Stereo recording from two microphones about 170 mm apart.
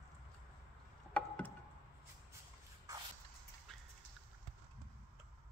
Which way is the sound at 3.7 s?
Centre (ahead or behind).